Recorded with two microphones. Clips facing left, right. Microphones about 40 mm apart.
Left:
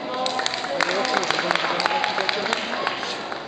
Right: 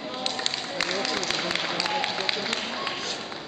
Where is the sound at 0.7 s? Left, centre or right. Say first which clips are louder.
Left 7 dB; centre.